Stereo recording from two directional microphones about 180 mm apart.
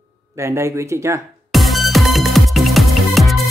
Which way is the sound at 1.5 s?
Centre (ahead or behind).